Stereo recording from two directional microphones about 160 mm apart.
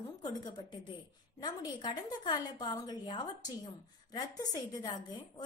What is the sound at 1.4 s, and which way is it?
A woman's voice, 25° left (ahead or behind).